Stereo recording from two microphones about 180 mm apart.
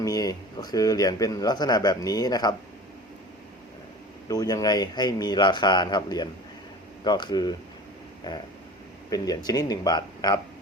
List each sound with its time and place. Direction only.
0.0 s speech: 20° left (ahead or behind)
4.3 s speech: 20° left (ahead or behind)